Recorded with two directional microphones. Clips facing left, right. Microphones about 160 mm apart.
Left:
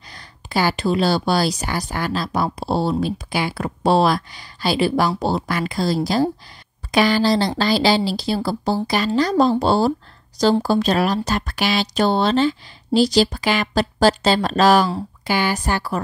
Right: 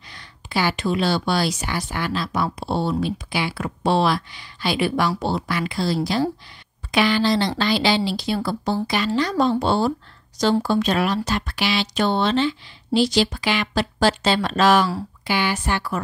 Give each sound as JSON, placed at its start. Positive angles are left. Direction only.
{"t": 0.1, "sound": "a woman's voice", "side_deg": 40}